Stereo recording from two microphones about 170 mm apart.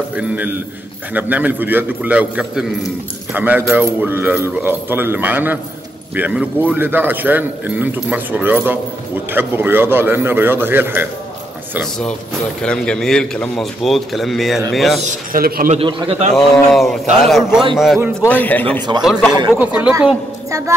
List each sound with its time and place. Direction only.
0.1 s a man's voice: 10° right (ahead or behind)
12.6 s a man's voice: 5° left (ahead or behind)
15.3 s a man's voice: 60° right (ahead or behind)
15.7 s a man's voice: 35° right (ahead or behind)
16.7 s a man's voice: centre (ahead or behind)
18.9 s a man's voice: 5° right (ahead or behind)